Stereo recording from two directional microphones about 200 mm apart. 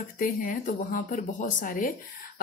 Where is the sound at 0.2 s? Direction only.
45° left (ahead or behind).